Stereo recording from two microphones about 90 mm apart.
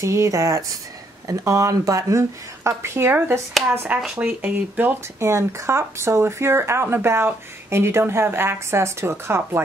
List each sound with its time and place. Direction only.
0.0 s speech: 35° right (ahead or behind)